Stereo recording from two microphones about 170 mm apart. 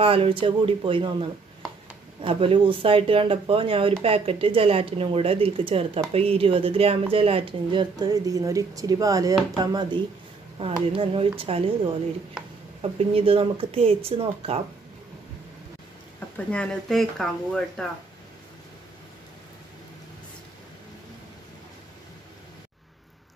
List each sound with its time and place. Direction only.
0.0 s speech: 35° right (ahead or behind)
2.2 s speech: 35° right (ahead or behind)
16.3 s speech: 5° left (ahead or behind)